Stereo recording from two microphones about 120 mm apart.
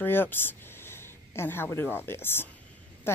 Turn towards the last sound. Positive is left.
turn(degrees=20)  # may be behind; listen again after turning